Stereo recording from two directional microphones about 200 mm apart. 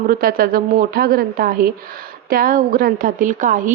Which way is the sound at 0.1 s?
45° right (ahead or behind).